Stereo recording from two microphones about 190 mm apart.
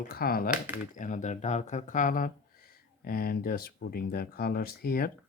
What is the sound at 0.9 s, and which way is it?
Speech, 40° left (ahead or behind).